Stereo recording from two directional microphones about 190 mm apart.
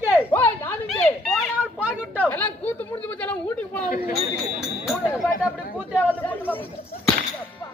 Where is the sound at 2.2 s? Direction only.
10° left (ahead or behind).